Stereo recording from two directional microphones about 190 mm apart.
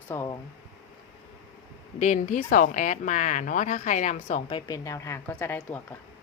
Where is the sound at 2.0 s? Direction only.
40° left (ahead or behind).